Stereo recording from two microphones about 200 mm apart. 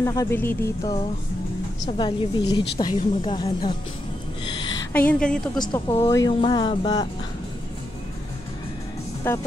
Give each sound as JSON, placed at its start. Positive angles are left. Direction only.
{"t": 0.0, "sound": "speech", "side_deg": 15}
{"t": 1.9, "sound": "speech", "side_deg": 25}
{"t": 4.9, "sound": "a woman's voice", "side_deg": 5}
{"t": 6.0, "sound": "speech", "side_deg": 15}
{"t": 9.3, "sound": "speech", "side_deg": 10}